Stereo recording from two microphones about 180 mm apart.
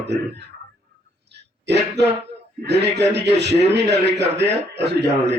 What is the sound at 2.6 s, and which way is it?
Music, 70° right (ahead or behind).